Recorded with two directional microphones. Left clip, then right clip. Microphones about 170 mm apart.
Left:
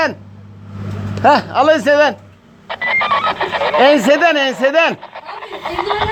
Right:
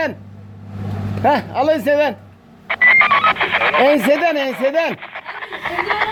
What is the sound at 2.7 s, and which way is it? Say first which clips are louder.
Speech: right 4 dB; 45° left (ahead or behind).